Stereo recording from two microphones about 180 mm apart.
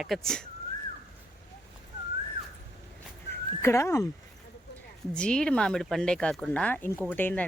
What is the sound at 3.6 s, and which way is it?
Speech, 15° left (ahead or behind).